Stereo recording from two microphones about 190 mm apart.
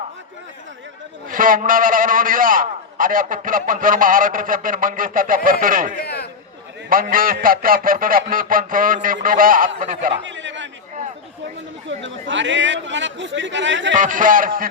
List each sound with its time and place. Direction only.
1.3 s a man's voice: 45° right (ahead or behind)
6.0 s a sound: 60° left (ahead or behind)
6.9 s a man's voice: 50° right (ahead or behind)
10.2 s chatter: 75° right (ahead or behind)
12.3 s a man's voice: 75° right (ahead or behind)
13.9 s a man's voice: 40° right (ahead or behind)